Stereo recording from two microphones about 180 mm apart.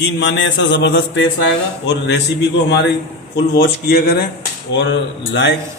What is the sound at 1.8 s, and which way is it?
Speech, 65° left (ahead or behind).